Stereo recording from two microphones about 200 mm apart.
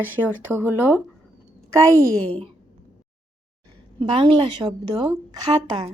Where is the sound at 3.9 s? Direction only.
25° right (ahead or behind).